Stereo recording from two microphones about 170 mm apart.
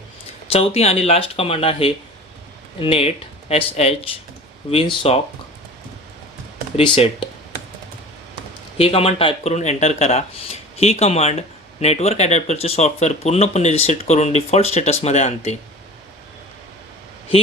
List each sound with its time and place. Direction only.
0.5 s speech: 35° left (ahead or behind)
6.7 s speech: 35° left (ahead or behind)
8.8 s speech: 35° left (ahead or behind)